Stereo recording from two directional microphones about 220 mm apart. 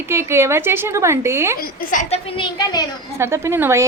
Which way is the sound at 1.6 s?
35° left (ahead or behind).